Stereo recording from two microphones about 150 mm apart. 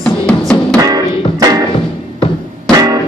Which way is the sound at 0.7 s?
25° right (ahead or behind).